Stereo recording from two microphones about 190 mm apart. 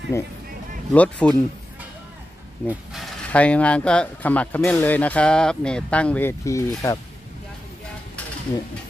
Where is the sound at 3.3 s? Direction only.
5° left (ahead or behind).